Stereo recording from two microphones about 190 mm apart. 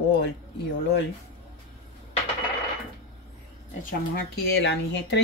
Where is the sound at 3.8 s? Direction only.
60° left (ahead or behind).